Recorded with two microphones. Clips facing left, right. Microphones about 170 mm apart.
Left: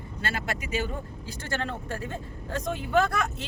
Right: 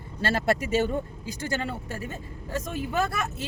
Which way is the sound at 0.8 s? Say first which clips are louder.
Right 6 dB; 15° right (ahead or behind).